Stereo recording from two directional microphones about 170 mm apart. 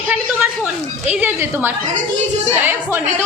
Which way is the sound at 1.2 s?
10° right (ahead or behind).